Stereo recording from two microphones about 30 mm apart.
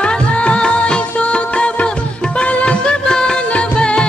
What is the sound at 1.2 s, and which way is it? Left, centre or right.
Music, left.